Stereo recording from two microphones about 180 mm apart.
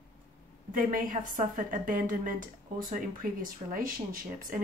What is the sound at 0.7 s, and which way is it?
Speech, 50° right (ahead or behind).